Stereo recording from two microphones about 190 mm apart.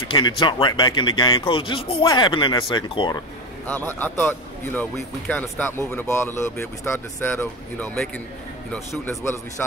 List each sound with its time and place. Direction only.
0.1 s speech: 25° left (ahead or behind)
3.6 s speech: 10° left (ahead or behind)
9.2 s speech: 15° left (ahead or behind)